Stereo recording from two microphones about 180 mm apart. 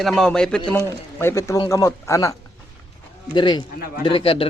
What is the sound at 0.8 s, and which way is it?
Speech, 15° left (ahead or behind).